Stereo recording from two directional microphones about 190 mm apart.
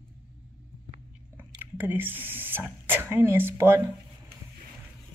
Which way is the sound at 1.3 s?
10° right (ahead or behind).